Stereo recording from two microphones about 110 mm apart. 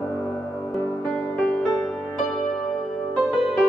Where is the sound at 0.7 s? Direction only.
30° left (ahead or behind).